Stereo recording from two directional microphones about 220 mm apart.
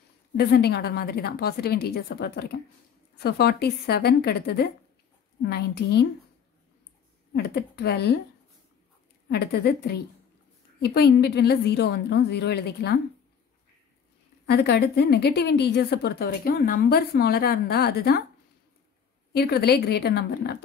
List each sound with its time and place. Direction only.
0.5 s a woman's voice: 45° left (ahead or behind)
7.3 s a woman's voice: 45° left (ahead or behind)
9.3 s a woman's voice: 45° left (ahead or behind)
14.4 s a woman's voice: 50° left (ahead or behind)
19.3 s a woman's voice: 45° left (ahead or behind)